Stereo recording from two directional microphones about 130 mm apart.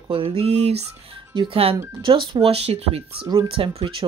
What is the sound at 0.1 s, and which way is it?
Speech, 45° right (ahead or behind).